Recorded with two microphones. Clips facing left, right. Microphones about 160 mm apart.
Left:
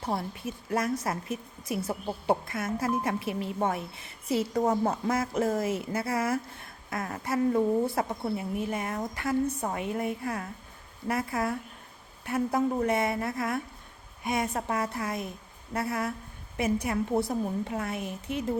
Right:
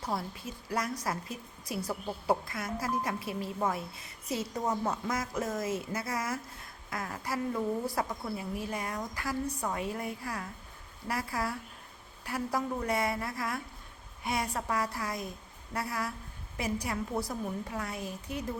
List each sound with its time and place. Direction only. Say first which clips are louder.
0.0 s a woman's voice: left 4 dB; 25° left (ahead or behind)